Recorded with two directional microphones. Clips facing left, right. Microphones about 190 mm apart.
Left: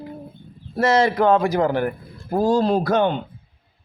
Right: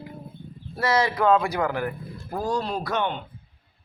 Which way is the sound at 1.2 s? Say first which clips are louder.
Left 4 dB; 35° left (ahead or behind).